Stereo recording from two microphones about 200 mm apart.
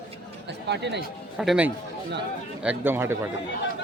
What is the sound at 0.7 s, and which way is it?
Speech, 60° right (ahead or behind).